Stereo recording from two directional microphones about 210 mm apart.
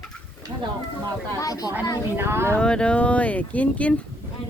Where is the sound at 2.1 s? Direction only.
10° right (ahead or behind).